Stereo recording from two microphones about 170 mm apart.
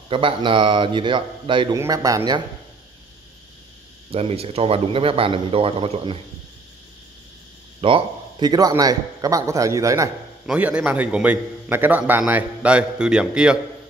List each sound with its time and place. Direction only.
0.1 s a man's voice: 30° right (ahead or behind)
4.1 s a man's voice: 35° right (ahead or behind)
7.8 s a man's voice: 30° right (ahead or behind)
10.4 s a man's voice: 5° right (ahead or behind)